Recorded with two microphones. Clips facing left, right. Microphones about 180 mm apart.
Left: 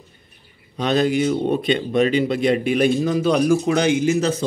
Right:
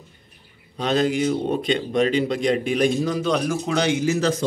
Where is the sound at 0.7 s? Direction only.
70° left (ahead or behind).